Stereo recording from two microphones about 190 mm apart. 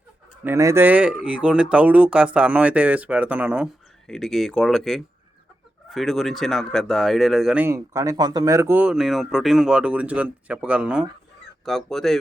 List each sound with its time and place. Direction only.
0.4 s speech: 15° right (ahead or behind); by 12.2 s centre (ahead or behind)